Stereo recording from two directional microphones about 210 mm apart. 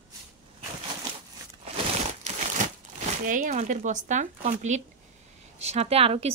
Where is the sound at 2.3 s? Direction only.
35° right (ahead or behind).